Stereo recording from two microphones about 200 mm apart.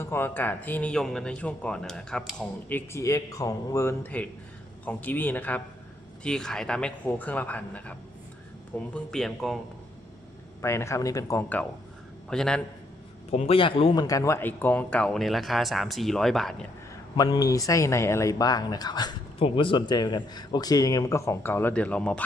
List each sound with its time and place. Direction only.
0.0 s speech: 10° left (ahead or behind)
10.6 s speech: 15° left (ahead or behind)
13.3 s speech: 30° left (ahead or behind); by 16.6 s centre (ahead or behind)
17.2 s speech: 20° left (ahead or behind)